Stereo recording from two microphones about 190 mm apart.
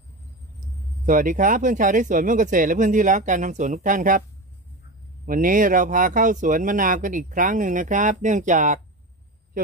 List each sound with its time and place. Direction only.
1.0 s speech: 45° right (ahead or behind)
5.2 s speech: 45° right (ahead or behind)